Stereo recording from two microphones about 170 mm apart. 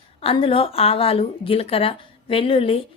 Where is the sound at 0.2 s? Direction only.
35° left (ahead or behind).